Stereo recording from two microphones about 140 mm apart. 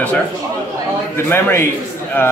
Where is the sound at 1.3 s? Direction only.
15° left (ahead or behind).